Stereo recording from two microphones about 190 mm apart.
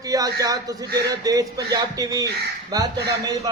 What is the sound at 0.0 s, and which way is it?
A man's voice, 20° right (ahead or behind).